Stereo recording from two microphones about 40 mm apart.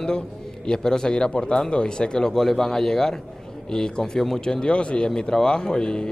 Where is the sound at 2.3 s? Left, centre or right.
Centre.